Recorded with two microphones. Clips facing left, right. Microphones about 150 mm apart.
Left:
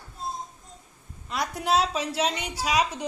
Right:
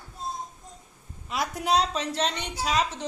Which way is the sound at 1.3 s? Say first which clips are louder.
Even; centre (ahead or behind).